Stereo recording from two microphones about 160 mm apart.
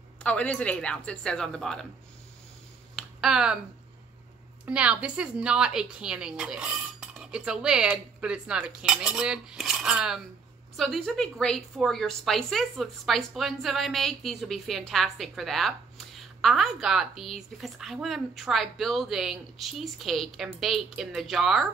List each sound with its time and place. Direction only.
0.2 s speech: 10° left (ahead or behind)
3.0 s a sound: centre (ahead or behind)
4.6 s a woman's voice: 5° right (ahead or behind)